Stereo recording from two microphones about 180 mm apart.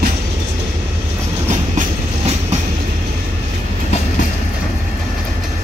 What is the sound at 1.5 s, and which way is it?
Train, 40° right (ahead or behind).